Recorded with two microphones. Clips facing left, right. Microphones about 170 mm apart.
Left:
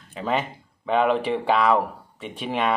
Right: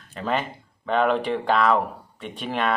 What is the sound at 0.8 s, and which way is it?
Speech, 10° left (ahead or behind).